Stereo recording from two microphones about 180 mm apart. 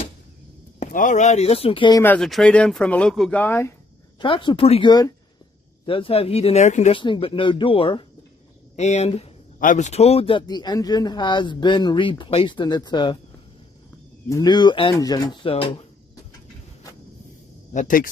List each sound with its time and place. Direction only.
0.7 s speech: 45° left (ahead or behind); by 2.0 s 25° left (ahead or behind)
2.0 s speech: centre (ahead or behind)
4.2 s speech: 25° left (ahead or behind)
7.0 s speech: 30° left (ahead or behind)
14.3 s speech: 25° left (ahead or behind)
17.7 s speech: 45° left (ahead or behind)